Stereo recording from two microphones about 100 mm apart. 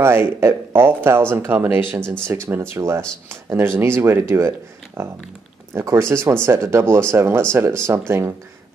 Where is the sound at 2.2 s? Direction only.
25° right (ahead or behind).